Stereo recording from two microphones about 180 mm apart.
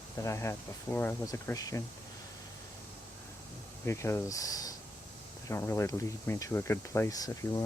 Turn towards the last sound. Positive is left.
turn(degrees=20)  # may be behind; listen again after turning